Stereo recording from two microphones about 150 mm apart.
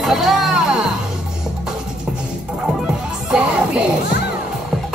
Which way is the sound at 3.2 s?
5° right (ahead or behind).